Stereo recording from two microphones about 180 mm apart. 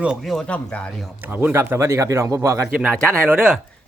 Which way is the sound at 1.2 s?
10° right (ahead or behind).